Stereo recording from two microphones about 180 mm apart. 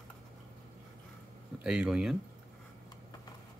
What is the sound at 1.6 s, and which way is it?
Speech, 5° right (ahead or behind).